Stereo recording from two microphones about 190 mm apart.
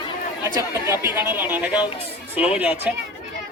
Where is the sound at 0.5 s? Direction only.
15° right (ahead or behind).